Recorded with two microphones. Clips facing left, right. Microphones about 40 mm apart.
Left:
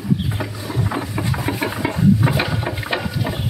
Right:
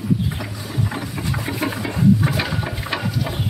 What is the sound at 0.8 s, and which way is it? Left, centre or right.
Boat, centre.